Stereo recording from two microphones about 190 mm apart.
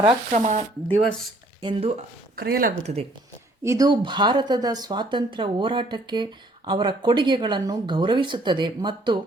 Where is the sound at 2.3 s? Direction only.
55° right (ahead or behind).